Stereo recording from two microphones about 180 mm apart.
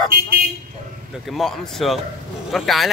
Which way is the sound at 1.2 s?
Centre (ahead or behind).